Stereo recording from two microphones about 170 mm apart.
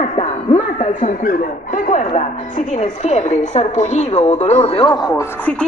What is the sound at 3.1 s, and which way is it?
Speech, 45° left (ahead or behind).